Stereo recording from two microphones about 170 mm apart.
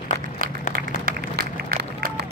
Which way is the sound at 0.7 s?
60° right (ahead or behind).